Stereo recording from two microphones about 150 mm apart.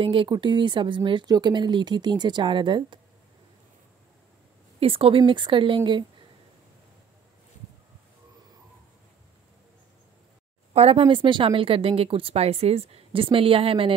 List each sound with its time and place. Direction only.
0.0 s speech: 35° right (ahead or behind)
4.7 s speech: 40° right (ahead or behind)
10.7 s speech: 40° right (ahead or behind)